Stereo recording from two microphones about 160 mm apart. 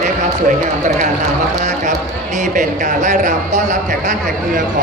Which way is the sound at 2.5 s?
50° right (ahead or behind).